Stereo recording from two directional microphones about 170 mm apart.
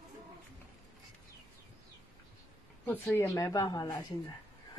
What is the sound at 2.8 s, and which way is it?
A woman's voice, 15° left (ahead or behind).